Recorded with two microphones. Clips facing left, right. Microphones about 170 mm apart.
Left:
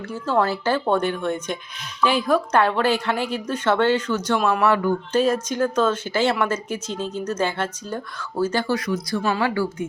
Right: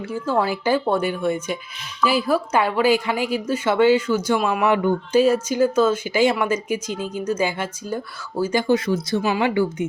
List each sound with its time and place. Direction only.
0.1 s a woman's voice: 10° right (ahead or behind)